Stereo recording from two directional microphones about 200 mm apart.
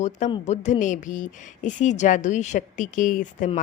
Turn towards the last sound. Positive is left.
turn(degrees=40)  # may be behind; listen again after turning